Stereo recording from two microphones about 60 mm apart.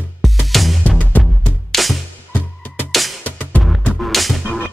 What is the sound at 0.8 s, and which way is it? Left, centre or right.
Music, left.